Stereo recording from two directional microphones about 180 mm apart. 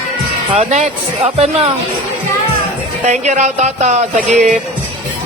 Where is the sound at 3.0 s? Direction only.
40° right (ahead or behind).